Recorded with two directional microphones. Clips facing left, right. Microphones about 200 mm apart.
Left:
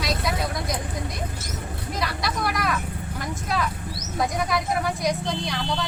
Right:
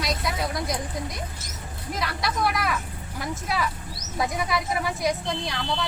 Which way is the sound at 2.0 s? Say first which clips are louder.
Right 1 dB; centre (ahead or behind).